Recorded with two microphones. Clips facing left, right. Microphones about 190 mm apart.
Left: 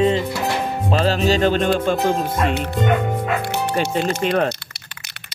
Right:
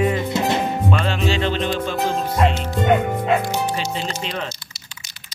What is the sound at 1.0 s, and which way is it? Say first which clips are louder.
Music: left 4 dB; 40° left (ahead or behind).